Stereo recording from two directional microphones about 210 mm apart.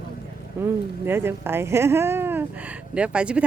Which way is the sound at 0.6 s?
10° right (ahead or behind).